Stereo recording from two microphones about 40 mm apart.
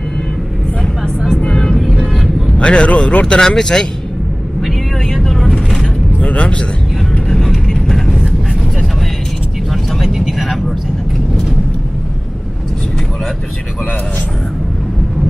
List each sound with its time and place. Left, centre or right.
0.8 s vehicle: centre
1.4 s vehicle: centre
1.9 s vehicle: centre
2.5 s speech: left
3.3 s speech: centre
4.6 s vehicle: centre
6.1 s a sound: left
7.1 s vehicle: centre
9.7 s vehicle: centre